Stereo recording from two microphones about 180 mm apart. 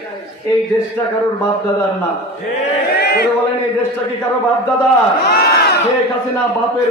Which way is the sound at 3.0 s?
60° left (ahead or behind).